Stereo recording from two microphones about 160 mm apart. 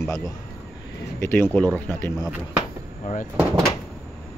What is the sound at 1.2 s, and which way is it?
Speech, 10° left (ahead or behind).